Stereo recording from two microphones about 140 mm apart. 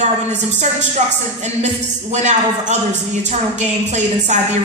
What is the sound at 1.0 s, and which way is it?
A woman's voice, 60° right (ahead or behind).